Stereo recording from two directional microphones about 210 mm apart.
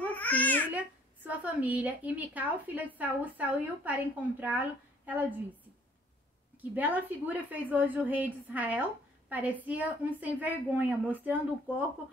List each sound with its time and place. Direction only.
0.1 s babbling: 10° left (ahead or behind)
0.7 s a woman's voice: 5° right (ahead or behind)
6.6 s a woman's voice: 10° right (ahead or behind)